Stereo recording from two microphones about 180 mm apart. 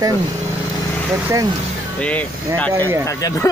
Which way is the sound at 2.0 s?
5° left (ahead or behind).